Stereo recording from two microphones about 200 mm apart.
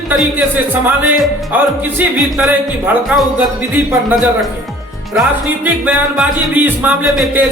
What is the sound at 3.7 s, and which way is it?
Speech, 10° right (ahead or behind).